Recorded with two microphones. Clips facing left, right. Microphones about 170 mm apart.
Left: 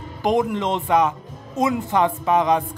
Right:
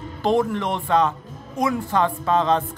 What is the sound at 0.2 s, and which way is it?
Speech, 15° left (ahead or behind).